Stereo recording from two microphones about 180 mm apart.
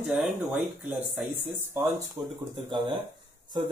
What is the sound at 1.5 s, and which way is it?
Speech, 15° right (ahead or behind).